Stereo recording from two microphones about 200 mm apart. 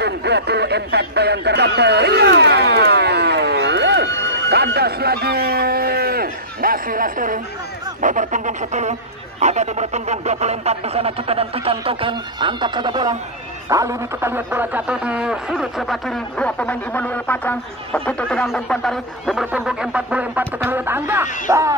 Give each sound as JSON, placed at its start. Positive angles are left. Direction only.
{"t": 0.0, "sound": "speech", "side_deg": -55}
{"t": 8.0, "sound": "a sound", "side_deg": -40}
{"t": 9.4, "sound": "speech", "side_deg": -35}